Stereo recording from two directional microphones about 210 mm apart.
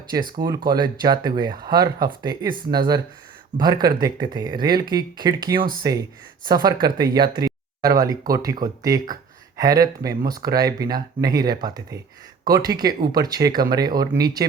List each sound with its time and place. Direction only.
0.3 s speech: 20° right (ahead or behind)